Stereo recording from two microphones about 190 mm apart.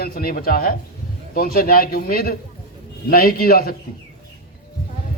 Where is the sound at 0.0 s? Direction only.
50° left (ahead or behind).